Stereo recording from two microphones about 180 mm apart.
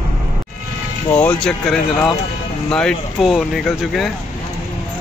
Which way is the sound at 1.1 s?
5° left (ahead or behind).